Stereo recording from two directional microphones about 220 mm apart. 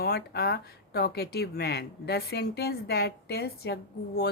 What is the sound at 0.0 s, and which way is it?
Speech, 45° left (ahead or behind).